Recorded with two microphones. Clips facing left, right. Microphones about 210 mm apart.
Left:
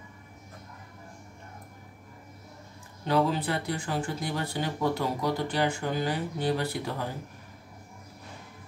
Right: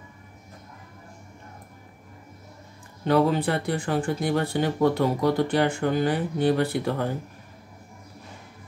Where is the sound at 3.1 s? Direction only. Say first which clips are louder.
Right 5 dB; 55° right (ahead or behind).